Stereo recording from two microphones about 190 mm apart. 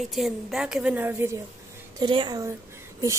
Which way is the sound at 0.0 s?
Centre (ahead or behind).